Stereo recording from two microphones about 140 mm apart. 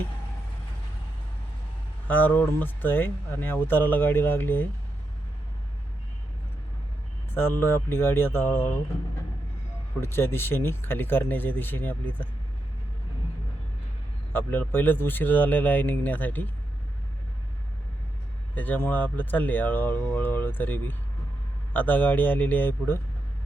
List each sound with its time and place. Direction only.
2.0 s speech: 10° left (ahead or behind)
7.3 s speech: 15° left (ahead or behind)
10.0 s speech: 15° left (ahead or behind)
14.3 s speech: 15° left (ahead or behind)
18.5 s speech: 10° left (ahead or behind)